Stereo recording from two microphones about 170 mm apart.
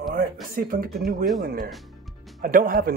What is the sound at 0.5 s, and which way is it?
Speech, 60° right (ahead or behind).